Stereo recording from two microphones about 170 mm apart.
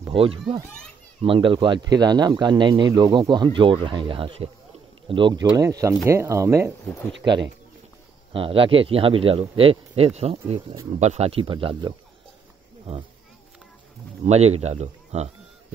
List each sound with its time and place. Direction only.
0.1 s a man's voice: 30° right (ahead or behind); by 6.7 s 15° right (ahead or behind)
8.3 s a man's voice: 30° right (ahead or behind)
14.2 s a man's voice: 40° right (ahead or behind)